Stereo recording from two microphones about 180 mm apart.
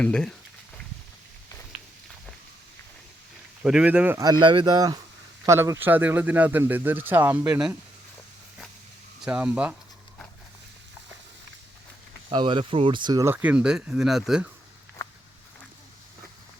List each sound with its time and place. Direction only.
0.0 s speech: 5° left (ahead or behind)
3.6 s speech: 5° right (ahead or behind)
4.2 s speech: 25° right (ahead or behind); by 7.8 s 10° right (ahead or behind)
9.2 s speech: 5° right (ahead or behind)
12.3 s speech: 25° right (ahead or behind); by 14.5 s 5° right (ahead or behind)